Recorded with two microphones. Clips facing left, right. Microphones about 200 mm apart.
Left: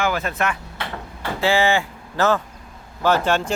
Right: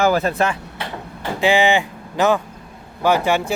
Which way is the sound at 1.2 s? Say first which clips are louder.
Right 3 dB; 15° right (ahead or behind).